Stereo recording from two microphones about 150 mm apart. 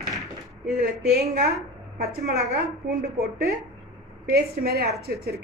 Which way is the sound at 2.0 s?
90° right.